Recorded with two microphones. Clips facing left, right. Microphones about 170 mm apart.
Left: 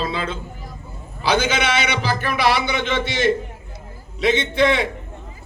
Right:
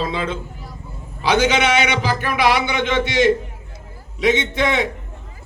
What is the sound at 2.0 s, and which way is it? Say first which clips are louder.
A man's voice: right 1 dB; 15° right (ahead or behind).